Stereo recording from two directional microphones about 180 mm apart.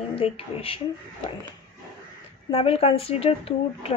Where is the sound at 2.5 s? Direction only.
30° left (ahead or behind).